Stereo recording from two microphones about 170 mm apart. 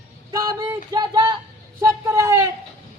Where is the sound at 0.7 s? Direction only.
20° right (ahead or behind).